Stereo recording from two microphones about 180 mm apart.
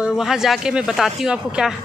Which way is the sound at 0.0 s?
Centre (ahead or behind).